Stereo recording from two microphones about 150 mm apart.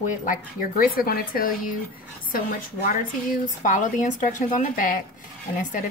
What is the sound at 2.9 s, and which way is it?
A woman's voice, 60° left (ahead or behind).